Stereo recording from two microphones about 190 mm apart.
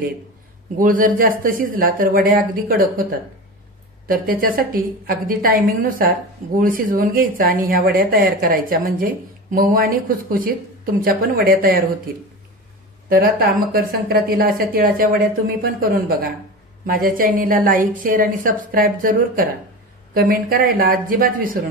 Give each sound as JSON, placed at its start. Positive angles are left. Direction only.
{"t": 0.7, "sound": "speech", "side_deg": -45}
{"t": 4.1, "sound": "speech", "side_deg": -50}
{"t": 13.1, "sound": "speech", "side_deg": -50}